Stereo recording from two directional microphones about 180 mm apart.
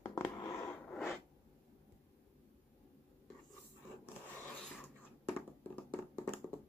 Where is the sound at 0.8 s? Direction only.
Centre (ahead or behind).